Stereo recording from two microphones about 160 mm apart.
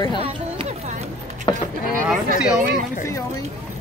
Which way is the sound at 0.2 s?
40° right (ahead or behind).